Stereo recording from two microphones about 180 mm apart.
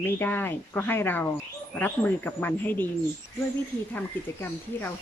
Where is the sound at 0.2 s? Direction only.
10° left (ahead or behind).